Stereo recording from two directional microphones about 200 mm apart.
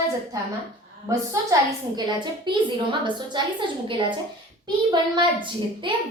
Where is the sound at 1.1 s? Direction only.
15° right (ahead or behind).